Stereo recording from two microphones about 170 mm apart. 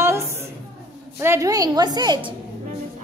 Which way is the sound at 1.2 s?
15° right (ahead or behind).